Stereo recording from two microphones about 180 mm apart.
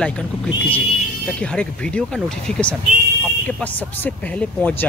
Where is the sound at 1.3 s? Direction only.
5° left (ahead or behind).